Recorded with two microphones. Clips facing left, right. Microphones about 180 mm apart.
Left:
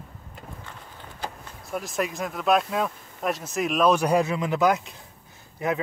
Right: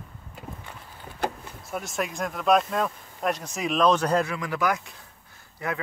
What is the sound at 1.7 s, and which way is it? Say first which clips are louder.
Speech: left 2 dB; centre (ahead or behind).